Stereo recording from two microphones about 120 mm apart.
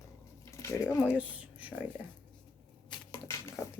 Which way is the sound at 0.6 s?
25° left (ahead or behind).